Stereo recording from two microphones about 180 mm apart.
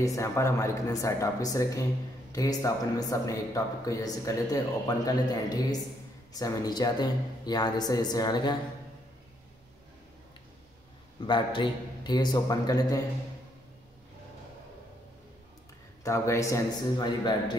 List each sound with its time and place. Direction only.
0.0 s a man's voice: 15° left (ahead or behind)
11.2 s a man's voice: 25° left (ahead or behind)
16.0 s speech: 15° left (ahead or behind)